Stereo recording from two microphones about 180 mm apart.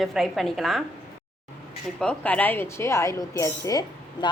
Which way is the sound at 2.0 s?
5° left (ahead or behind).